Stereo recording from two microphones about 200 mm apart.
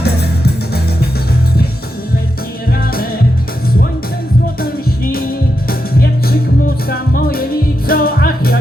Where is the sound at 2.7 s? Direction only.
50° left (ahead or behind).